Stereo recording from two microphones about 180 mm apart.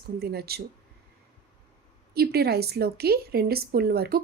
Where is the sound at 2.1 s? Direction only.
60° right (ahead or behind).